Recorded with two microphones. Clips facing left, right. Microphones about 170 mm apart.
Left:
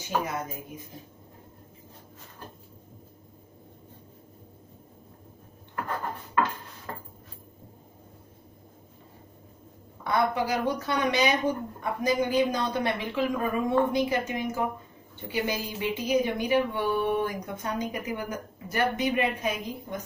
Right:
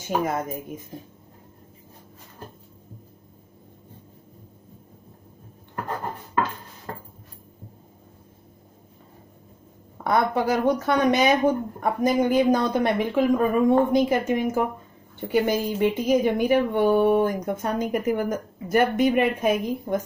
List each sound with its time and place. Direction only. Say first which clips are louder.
10.0 s a woman's voice: right 4 dB; 50° right (ahead or behind)